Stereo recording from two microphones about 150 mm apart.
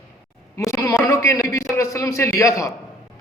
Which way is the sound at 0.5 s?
20° left (ahead or behind).